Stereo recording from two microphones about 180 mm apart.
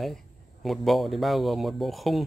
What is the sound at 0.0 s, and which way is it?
Speech, centre (ahead or behind).